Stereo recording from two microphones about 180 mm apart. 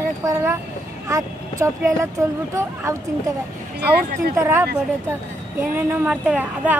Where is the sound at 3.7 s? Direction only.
65° right (ahead or behind).